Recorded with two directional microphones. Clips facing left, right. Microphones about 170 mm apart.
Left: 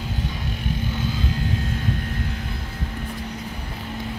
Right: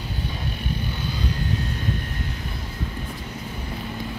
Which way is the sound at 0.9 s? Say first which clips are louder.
Left 3 dB; 90° left.